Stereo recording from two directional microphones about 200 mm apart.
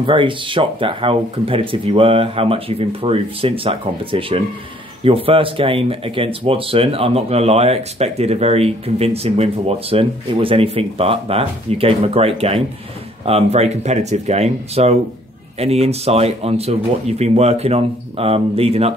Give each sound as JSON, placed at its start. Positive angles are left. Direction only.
{"t": 0.0, "sound": "speech", "side_deg": -25}